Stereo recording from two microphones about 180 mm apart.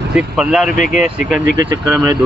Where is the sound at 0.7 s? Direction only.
45° left (ahead or behind).